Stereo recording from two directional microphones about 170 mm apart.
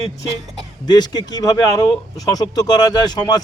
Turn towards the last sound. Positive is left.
turn(degrees=25)  # may be behind; listen again after turning